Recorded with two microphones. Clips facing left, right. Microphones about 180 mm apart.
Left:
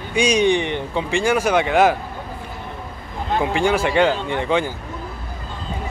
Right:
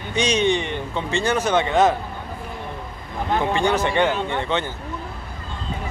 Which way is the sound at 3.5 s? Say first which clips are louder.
Left 3 dB; 10° left (ahead or behind).